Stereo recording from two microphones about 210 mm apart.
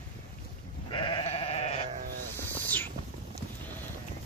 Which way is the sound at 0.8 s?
25° left (ahead or behind).